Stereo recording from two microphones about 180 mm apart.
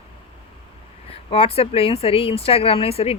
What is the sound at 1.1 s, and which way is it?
Speech, 30° left (ahead or behind).